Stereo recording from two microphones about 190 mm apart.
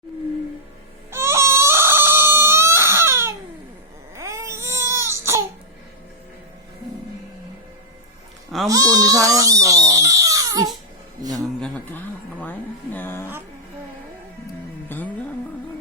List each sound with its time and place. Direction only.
1.1 s a sound: 15° right (ahead or behind)
4.1 s baby cry: 15° right (ahead or behind)
8.6 s baby cry: 20° right (ahead or behind)
11.2 s a sound: 20° right (ahead or behind)
11.6 s music: 10° left (ahead or behind)
14.8 s music: 10° left (ahead or behind)